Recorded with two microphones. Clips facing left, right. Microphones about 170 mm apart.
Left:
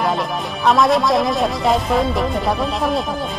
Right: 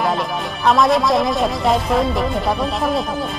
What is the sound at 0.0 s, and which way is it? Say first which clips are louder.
Speech: even; centre (ahead or behind).